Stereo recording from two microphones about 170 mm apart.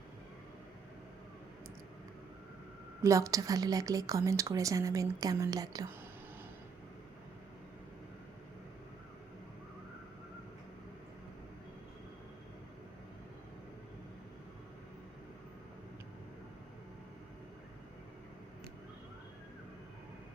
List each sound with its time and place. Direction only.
3.0 s a woman's voice: 20° right (ahead or behind)